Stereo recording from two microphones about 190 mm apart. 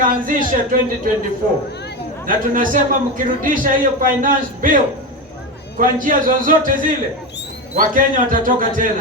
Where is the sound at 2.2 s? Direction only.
45° right (ahead or behind).